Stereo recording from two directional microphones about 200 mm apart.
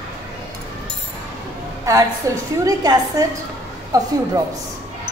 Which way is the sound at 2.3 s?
15° right (ahead or behind).